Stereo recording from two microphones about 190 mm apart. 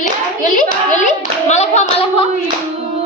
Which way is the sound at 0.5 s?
40° left (ahead or behind).